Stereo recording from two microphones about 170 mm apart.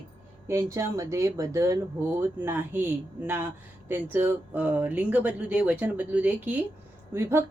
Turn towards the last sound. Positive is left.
turn(degrees=-15)  # may be behind; listen again after turning